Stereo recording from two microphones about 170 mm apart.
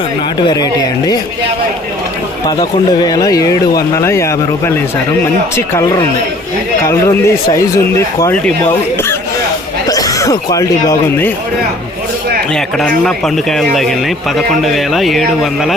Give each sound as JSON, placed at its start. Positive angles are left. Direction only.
{"t": 0.4, "sound": "speech", "side_deg": 25}
{"t": 2.6, "sound": "speech", "side_deg": 20}
{"t": 6.8, "sound": "speech", "side_deg": 15}
{"t": 9.8, "sound": "speech", "side_deg": 20}
{"t": 12.5, "sound": "speech", "side_deg": 5}